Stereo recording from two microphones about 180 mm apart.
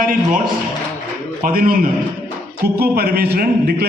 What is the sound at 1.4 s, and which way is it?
Speech, 55° right (ahead or behind).